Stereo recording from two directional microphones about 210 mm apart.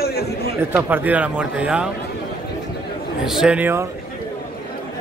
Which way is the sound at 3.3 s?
5° right (ahead or behind).